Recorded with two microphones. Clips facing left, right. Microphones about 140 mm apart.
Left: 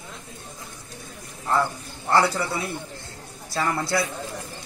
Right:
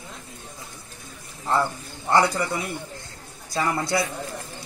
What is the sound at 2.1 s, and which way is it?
Speech, 20° right (ahead or behind).